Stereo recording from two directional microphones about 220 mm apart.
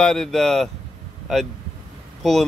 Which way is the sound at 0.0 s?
Centre (ahead or behind).